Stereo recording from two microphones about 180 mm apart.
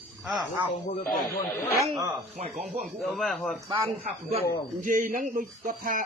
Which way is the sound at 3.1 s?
Centre (ahead or behind).